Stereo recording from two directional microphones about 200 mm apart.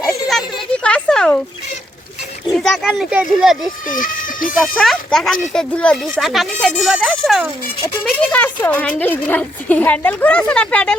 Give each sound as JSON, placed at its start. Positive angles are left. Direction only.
{"t": 0.9, "sound": "a sound", "side_deg": 5}
{"t": 2.5, "sound": "speech", "side_deg": 0}
{"t": 3.8, "sound": "speech", "side_deg": 45}
{"t": 4.6, "sound": "a woman's voice", "side_deg": 0}